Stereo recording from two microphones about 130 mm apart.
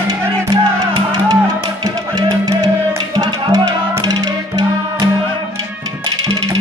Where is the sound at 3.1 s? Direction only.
30° right (ahead or behind).